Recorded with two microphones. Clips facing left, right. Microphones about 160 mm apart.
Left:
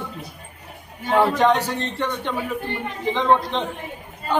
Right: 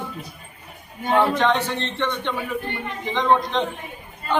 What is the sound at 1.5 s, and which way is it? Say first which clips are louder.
Speech: left 2 dB; 40° left (ahead or behind).